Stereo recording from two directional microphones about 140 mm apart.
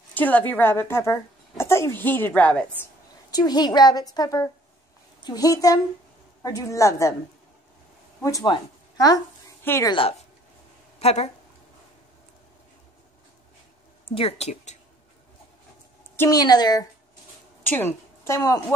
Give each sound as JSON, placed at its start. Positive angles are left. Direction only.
{"t": 0.1, "sound": "a woman's voice", "side_deg": 10}
{"t": 3.3, "sound": "a woman's voice", "side_deg": 30}
{"t": 8.2, "sound": "speech", "side_deg": 25}
{"t": 9.8, "sound": "a woman's voice", "side_deg": 40}
{"t": 14.0, "sound": "speech", "side_deg": 45}
{"t": 16.2, "sound": "a woman's voice", "side_deg": 25}
{"t": 17.6, "sound": "a woman's voice", "side_deg": 15}